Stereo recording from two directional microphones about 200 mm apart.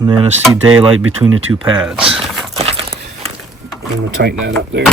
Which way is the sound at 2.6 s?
30° right (ahead or behind).